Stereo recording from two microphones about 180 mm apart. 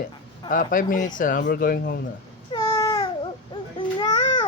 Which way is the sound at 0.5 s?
45° left (ahead or behind).